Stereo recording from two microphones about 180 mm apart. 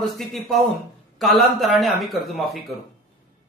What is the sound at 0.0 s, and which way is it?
Speech, centre (ahead or behind).